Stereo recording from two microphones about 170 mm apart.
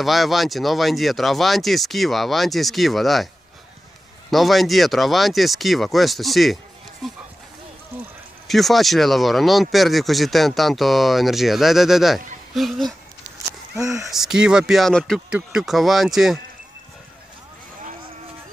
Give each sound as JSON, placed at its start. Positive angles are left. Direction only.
{"t": 0.0, "sound": "speech", "side_deg": 0}
{"t": 4.3, "sound": "speech", "side_deg": 0}
{"t": 8.5, "sound": "speech", "side_deg": 0}
{"t": 13.5, "sound": "speech", "side_deg": -15}
{"t": 14.1, "sound": "speech", "side_deg": -5}